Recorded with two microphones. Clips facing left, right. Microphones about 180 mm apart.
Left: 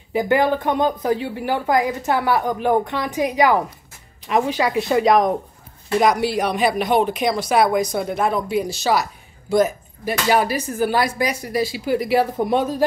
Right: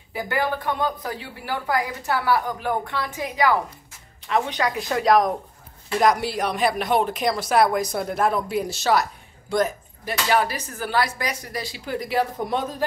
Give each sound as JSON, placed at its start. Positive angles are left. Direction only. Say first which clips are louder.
{"t": 0.1, "sound": "a woman's voice", "louder": "left 8 dB", "side_deg": 20}